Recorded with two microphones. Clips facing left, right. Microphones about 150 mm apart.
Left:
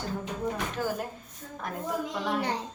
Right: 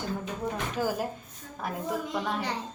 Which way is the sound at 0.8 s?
10° right (ahead or behind).